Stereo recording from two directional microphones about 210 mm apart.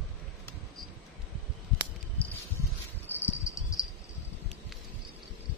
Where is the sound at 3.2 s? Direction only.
15° left (ahead or behind).